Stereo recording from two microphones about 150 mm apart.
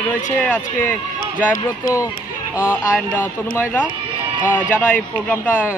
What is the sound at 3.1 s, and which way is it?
Speech, 10° left (ahead or behind).